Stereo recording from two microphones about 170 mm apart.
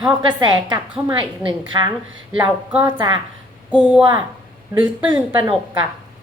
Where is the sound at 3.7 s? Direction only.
5° right (ahead or behind).